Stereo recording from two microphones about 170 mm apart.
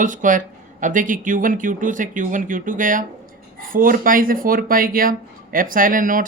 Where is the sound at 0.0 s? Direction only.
50° right (ahead or behind).